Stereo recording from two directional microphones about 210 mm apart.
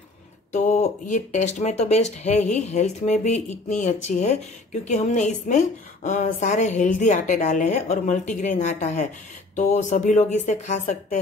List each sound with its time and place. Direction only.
0.5 s a woman's voice: 30° left (ahead or behind)